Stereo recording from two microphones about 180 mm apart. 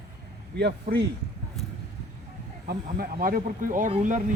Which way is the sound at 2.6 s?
55° right (ahead or behind).